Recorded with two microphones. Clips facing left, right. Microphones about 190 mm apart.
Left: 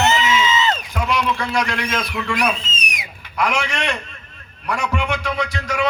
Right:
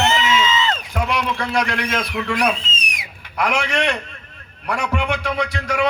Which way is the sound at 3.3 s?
55° right (ahead or behind).